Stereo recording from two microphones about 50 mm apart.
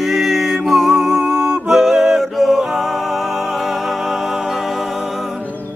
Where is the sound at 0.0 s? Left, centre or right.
Centre.